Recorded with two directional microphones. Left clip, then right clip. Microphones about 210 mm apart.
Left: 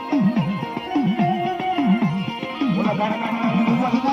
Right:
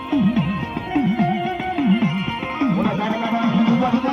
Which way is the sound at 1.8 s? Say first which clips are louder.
Right 1 dB; 5° right (ahead or behind).